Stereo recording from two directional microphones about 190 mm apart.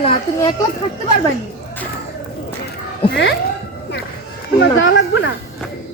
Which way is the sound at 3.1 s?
70° left (ahead or behind).